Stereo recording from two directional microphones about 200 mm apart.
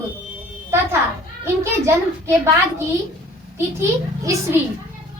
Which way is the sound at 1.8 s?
15° right (ahead or behind).